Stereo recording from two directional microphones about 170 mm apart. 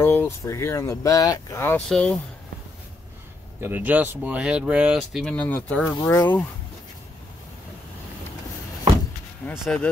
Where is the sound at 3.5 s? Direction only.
10° right (ahead or behind).